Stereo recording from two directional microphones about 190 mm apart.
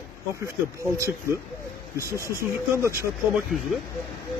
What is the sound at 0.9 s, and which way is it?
Speech, 15° right (ahead or behind).